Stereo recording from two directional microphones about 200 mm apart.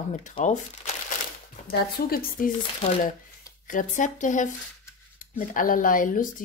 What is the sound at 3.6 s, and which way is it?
Speech, 40° left (ahead or behind).